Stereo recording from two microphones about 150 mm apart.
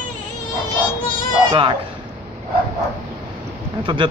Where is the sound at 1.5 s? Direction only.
30° right (ahead or behind).